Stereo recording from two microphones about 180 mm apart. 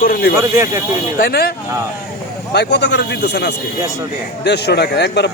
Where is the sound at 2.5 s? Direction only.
70° left (ahead or behind).